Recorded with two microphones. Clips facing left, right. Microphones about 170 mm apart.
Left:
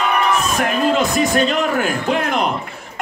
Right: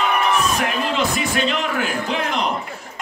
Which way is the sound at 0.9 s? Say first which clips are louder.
Left 5 dB; 45° left (ahead or behind).